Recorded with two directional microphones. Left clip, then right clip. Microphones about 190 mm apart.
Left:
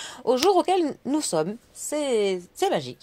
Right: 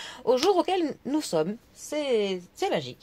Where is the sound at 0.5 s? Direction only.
35° left (ahead or behind).